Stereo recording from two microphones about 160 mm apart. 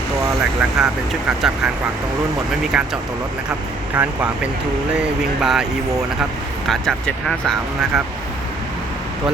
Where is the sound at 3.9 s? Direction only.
10° right (ahead or behind).